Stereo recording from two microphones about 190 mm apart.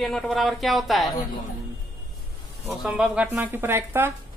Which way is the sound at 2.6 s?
5° right (ahead or behind).